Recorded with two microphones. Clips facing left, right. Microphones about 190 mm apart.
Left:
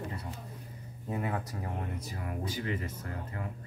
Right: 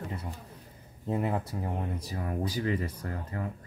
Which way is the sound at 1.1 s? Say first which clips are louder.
Right 4 dB; 25° right (ahead or behind).